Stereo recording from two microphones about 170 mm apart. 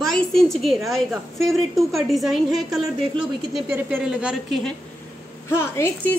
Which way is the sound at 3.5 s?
10° right (ahead or behind).